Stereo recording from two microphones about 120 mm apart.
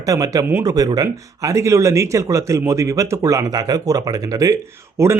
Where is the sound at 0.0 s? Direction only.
30° right (ahead or behind).